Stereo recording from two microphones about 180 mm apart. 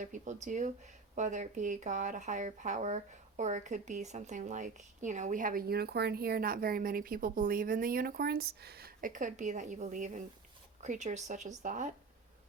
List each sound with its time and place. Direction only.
0.0 s speech: 45° right (ahead or behind)